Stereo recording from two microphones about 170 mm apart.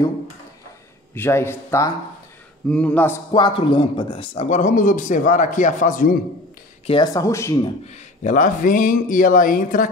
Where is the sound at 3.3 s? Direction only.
30° left (ahead or behind); by 6.1 s 50° left (ahead or behind).